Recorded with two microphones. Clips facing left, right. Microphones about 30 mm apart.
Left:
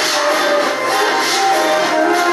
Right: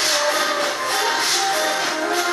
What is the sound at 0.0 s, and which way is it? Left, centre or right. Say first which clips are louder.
Music: left 5 dB; left.